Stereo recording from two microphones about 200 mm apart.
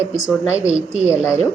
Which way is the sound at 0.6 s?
5° right (ahead or behind).